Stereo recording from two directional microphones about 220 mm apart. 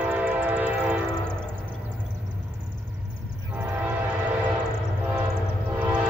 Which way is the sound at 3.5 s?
5° right (ahead or behind).